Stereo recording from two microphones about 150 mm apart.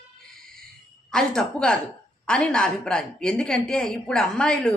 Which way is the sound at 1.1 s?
5° left (ahead or behind).